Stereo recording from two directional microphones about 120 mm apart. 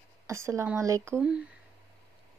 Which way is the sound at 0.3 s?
25° right (ahead or behind).